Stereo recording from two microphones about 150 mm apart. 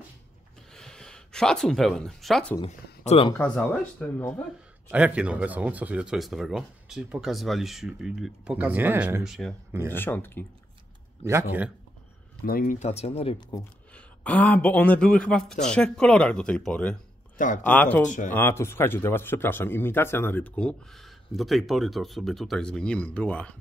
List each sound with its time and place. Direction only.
0.7 s speech: 5° left (ahead or behind)
3.1 s speech: 35° left (ahead or behind)
3.3 s speech: 10° left (ahead or behind)
4.8 s speech: 10° right (ahead or behind)
9.2 s speech: centre (ahead or behind)
9.7 s speech: 15° right (ahead or behind)
9.9 s speech: 15° left (ahead or behind)
11.2 s speech: 15° right (ahead or behind)
12.4 s speech: 75° left (ahead or behind)
12.7 s speech: 45° left (ahead or behind)
13.9 s speech: 10° left (ahead or behind)
18.0 s speech: 55° left (ahead or behind)
18.3 s speech: 15° left (ahead or behind)